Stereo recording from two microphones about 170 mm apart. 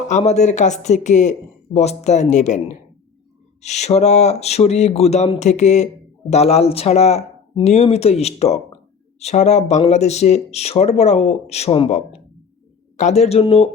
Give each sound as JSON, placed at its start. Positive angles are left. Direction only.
{"t": 0.1, "sound": "speech", "side_deg": 40}